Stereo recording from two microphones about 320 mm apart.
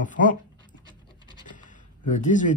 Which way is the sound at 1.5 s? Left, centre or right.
Left.